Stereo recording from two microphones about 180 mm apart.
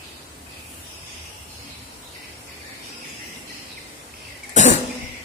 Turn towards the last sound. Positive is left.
turn(degrees=40)  # may be behind; listen again after turning